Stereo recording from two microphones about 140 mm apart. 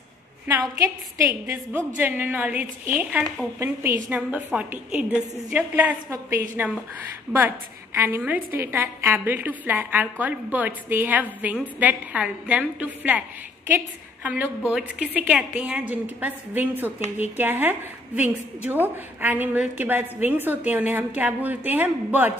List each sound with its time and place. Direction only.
1.2 s a woman's voice: 20° right (ahead or behind)